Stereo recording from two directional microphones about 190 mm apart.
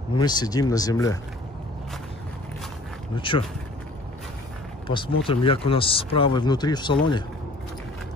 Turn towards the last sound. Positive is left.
turn(degrees=25)  # may be behind; listen again after turning